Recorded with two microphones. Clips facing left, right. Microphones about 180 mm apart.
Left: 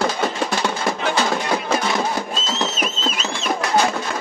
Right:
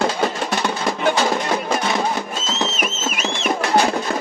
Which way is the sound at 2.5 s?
70° right (ahead or behind).